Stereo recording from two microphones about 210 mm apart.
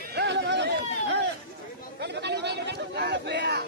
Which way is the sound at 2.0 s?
55° right (ahead or behind).